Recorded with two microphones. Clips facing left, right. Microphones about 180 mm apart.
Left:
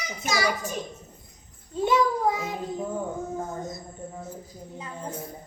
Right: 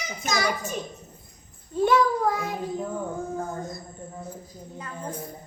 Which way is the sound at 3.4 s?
20° left (ahead or behind).